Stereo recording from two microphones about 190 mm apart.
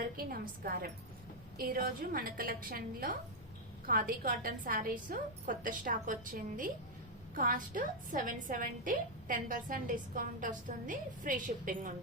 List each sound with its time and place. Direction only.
0.0 s a woman's voice: 50° right (ahead or behind)